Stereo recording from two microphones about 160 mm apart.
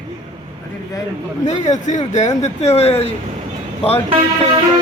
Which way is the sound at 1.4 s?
45° left (ahead or behind).